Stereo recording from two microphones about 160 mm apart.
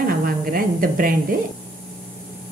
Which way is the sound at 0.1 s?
65° right (ahead or behind).